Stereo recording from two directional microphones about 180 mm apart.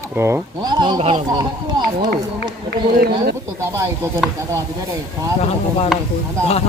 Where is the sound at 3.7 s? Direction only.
15° right (ahead or behind).